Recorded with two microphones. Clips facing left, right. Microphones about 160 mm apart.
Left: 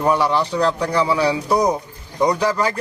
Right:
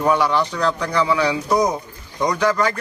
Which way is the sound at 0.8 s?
10° left (ahead or behind).